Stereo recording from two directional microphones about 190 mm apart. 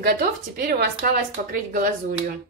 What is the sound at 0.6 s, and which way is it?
Speech, 50° right (ahead or behind).